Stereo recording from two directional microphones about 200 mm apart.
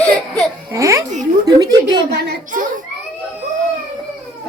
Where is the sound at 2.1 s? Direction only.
55° right (ahead or behind).